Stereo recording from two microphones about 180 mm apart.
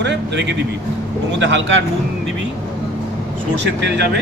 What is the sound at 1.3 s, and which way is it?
Speech, 90° right.